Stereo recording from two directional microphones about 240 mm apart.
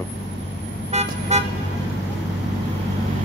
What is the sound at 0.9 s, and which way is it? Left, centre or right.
Vehicle, right.